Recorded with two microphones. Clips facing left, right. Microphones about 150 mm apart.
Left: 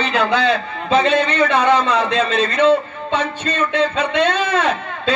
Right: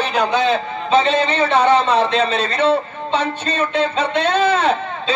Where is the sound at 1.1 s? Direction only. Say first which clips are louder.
Left 1 dB; 65° left (ahead or behind).